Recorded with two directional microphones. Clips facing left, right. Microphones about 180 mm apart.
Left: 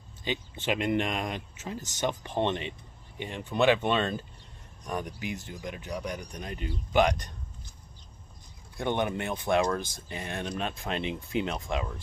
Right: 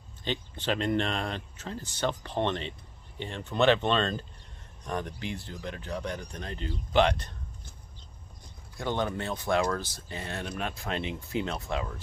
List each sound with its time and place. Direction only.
0.2 s speech: 10° left (ahead or behind)
8.7 s speech: 20° left (ahead or behind)